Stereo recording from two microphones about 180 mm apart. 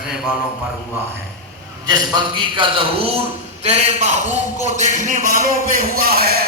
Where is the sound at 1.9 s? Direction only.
25° right (ahead or behind).